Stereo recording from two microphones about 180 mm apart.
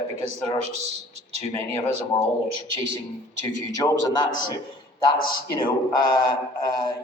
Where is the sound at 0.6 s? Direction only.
35° right (ahead or behind).